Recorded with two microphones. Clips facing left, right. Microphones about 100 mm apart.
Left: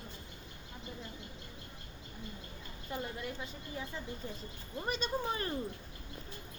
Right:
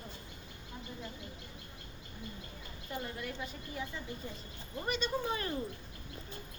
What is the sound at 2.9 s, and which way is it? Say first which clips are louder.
Speech: even; 20° left (ahead or behind).